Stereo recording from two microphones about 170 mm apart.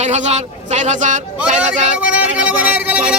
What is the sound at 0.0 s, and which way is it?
A man's voice, 45° right (ahead or behind).